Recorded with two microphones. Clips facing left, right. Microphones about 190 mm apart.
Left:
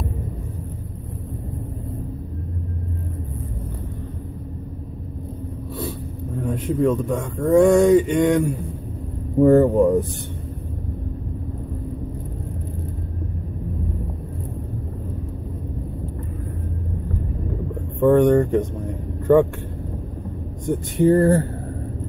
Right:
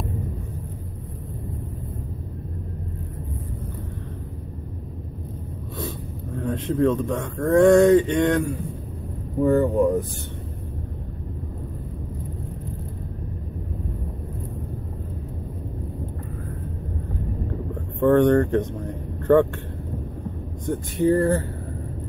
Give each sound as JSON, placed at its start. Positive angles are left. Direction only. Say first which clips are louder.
{"t": 6.4, "sound": "speech", "louder": "left 1 dB", "side_deg": 10}
{"t": 9.4, "sound": "speech", "louder": "left 5 dB", "side_deg": 45}
{"t": 18.0, "sound": "speech", "louder": "left 2 dB", "side_deg": 10}
{"t": 21.0, "sound": "speech", "louder": "left 4 dB", "side_deg": 40}